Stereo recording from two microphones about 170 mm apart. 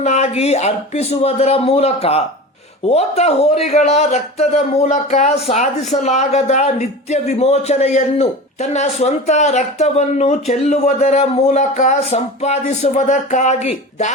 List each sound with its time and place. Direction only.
0.0 s speech: 40° left (ahead or behind)